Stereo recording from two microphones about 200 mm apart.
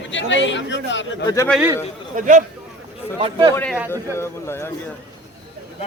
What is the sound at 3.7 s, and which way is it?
Speech, 10° right (ahead or behind).